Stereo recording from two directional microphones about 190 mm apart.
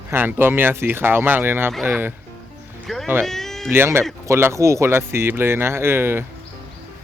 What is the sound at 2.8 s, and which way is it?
Speech, centre (ahead or behind).